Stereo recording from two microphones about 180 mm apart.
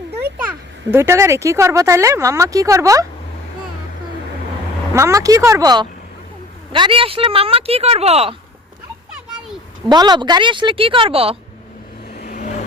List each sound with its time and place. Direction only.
0.3 s a child's voice: 10° right (ahead or behind)
4.9 s a woman's voice: 15° right (ahead or behind); by 8.4 s 35° right (ahead or behind)
9.9 s a woman's voice: 25° right (ahead or behind)
12.2 s vehicle: 45° left (ahead or behind)